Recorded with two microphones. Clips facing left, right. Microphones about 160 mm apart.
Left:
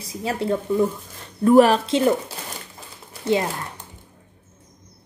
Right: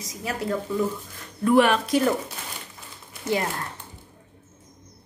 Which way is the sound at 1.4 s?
35° left (ahead or behind).